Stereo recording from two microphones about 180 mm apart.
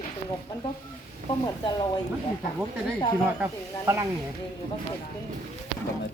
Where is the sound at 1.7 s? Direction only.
25° left (ahead or behind).